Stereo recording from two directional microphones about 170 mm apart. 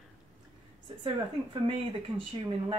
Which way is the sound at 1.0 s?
30° right (ahead or behind).